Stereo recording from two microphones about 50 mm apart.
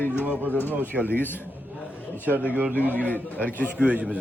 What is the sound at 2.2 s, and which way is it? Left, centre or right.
Speech, right.